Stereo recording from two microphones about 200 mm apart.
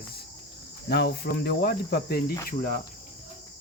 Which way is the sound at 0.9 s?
50° left (ahead or behind).